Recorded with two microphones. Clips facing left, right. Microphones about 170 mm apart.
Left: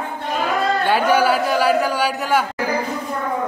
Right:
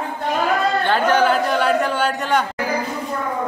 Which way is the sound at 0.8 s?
10° left (ahead or behind).